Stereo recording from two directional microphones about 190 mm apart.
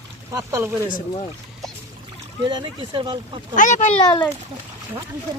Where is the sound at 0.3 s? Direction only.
15° right (ahead or behind).